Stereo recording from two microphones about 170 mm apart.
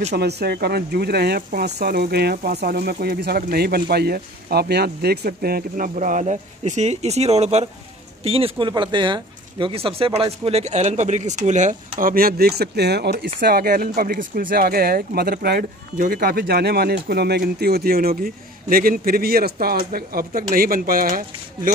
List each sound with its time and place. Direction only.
0.1 s speech: 75° right (ahead or behind); by 11.7 s 45° right (ahead or behind)
12.0 s speech: 60° right (ahead or behind)